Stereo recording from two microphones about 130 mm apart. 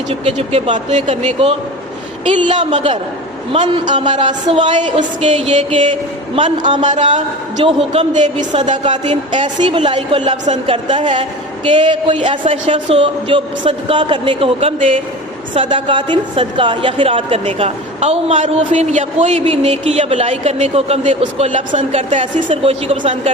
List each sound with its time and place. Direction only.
0.1 s speech: 55° right (ahead or behind)
2.6 s speech: 60° right (ahead or behind)
3.5 s a woman's voice: 45° right (ahead or behind)
5.2 s a woman's voice: 50° right (ahead or behind)
6.8 s speech: 65° right (ahead or behind)
7.6 s a woman's voice: 45° right (ahead or behind)
8.1 s a woman's voice: 65° right (ahead or behind)
8.8 s a woman's voice: 40° right (ahead or behind); by 21.6 s 55° right (ahead or behind)
21.8 s a woman's voice: 70° right (ahead or behind)
22.4 s a woman's voice: 45° right (ahead or behind)